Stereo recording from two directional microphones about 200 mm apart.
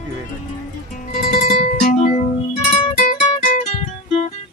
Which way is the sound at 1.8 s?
40° left (ahead or behind).